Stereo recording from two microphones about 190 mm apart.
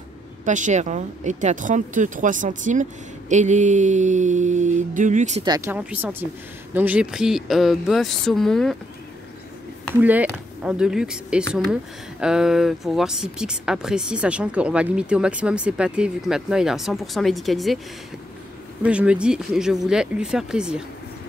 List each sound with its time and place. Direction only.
0.5 s speech: 40° right (ahead or behind)
5.7 s speech: 10° right (ahead or behind)
9.9 s speech: 10° right (ahead or behind)
18.8 s speech: 5° right (ahead or behind)